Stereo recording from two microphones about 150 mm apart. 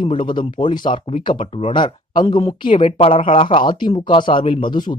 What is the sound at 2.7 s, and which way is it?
Speech, 40° left (ahead or behind).